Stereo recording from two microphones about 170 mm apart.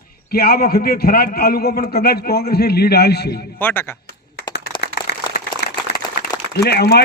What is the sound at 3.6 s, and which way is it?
Speech, 10° left (ahead or behind).